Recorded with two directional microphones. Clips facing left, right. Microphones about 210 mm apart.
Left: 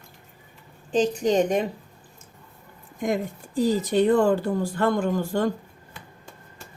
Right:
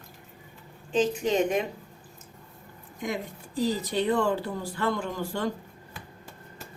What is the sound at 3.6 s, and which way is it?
A woman's voice, 50° left (ahead or behind).